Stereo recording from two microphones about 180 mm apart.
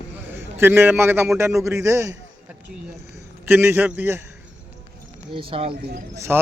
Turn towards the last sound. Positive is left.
turn(degrees=-15)  # may be behind; listen again after turning